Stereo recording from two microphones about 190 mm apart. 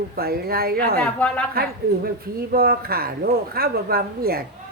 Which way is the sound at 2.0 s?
55° right (ahead or behind).